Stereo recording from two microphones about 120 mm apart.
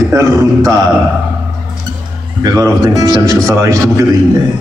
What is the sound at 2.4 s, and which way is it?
A man's voice, 30° right (ahead or behind).